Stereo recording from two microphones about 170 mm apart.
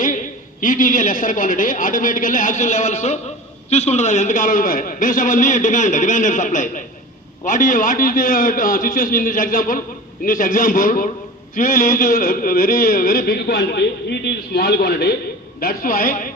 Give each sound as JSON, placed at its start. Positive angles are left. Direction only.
{"t": 0.6, "sound": "a man's voice", "side_deg": 50}